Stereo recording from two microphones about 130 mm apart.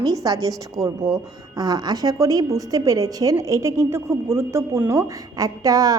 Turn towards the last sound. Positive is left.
turn(degrees=-30)  # may be behind; listen again after turning